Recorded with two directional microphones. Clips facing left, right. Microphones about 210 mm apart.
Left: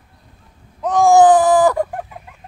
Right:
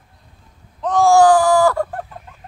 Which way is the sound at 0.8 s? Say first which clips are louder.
Left 1 dB; 15° left (ahead or behind).